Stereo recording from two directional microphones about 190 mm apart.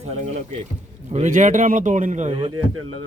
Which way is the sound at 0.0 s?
40° right (ahead or behind).